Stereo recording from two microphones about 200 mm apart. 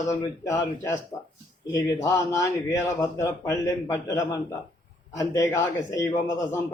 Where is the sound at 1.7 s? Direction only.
15° left (ahead or behind).